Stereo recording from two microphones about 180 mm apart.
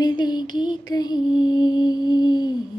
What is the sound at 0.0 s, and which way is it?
Mantra, 25° left (ahead or behind).